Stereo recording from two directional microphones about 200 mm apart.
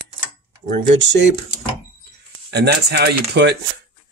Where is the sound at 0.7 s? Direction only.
60° right (ahead or behind).